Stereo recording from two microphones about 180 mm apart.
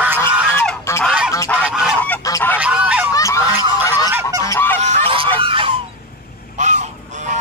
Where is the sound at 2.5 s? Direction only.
5° right (ahead or behind).